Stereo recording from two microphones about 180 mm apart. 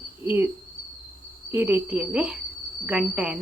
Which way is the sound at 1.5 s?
10° right (ahead or behind).